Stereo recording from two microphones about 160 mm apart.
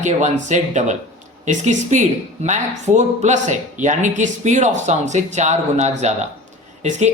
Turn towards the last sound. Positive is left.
turn(degrees=-45)  # may be behind; listen again after turning